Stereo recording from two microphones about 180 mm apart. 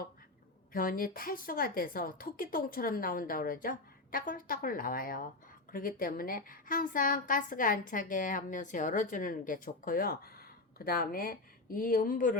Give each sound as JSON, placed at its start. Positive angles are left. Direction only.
{"t": 0.7, "sound": "a woman's voice", "side_deg": 50}